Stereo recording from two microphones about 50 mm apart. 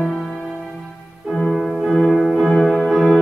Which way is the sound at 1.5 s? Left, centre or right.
Centre.